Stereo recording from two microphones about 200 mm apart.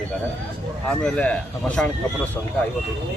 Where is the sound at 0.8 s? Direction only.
5° left (ahead or behind).